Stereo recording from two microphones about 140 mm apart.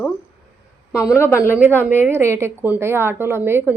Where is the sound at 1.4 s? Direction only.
15° left (ahead or behind).